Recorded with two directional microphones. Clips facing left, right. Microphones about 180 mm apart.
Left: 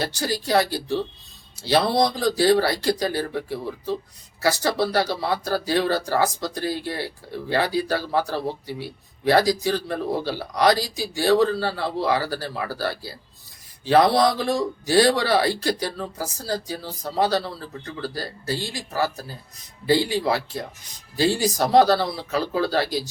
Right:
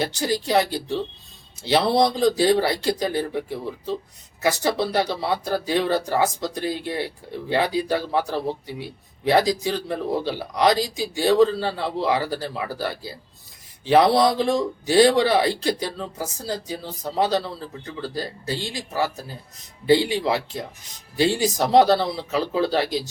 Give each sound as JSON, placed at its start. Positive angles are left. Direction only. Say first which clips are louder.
{"t": 0.0, "sound": "speech", "louder": "right 2 dB", "side_deg": -20}